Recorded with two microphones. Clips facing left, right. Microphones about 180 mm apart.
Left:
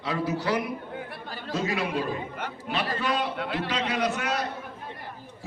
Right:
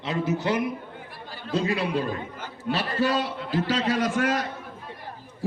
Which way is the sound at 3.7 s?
45° right (ahead or behind).